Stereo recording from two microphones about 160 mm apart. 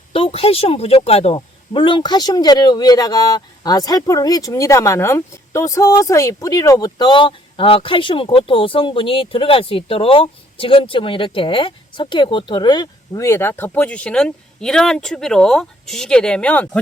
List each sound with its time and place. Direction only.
0.1 s speech: 35° left (ahead or behind); by 16.8 s 10° left (ahead or behind)